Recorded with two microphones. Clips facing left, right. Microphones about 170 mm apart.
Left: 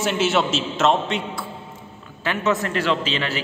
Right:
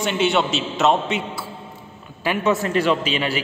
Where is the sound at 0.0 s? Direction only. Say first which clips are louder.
Right 1 dB; centre (ahead or behind).